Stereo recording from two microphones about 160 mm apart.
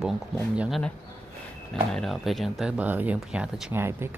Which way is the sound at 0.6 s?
Centre (ahead or behind).